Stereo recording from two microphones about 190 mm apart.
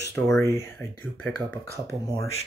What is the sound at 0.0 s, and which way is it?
Speech, 15° left (ahead or behind).